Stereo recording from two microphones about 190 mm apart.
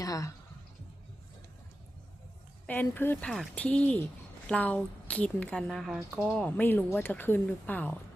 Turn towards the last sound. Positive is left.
turn(degrees=10)  # may be behind; listen again after turning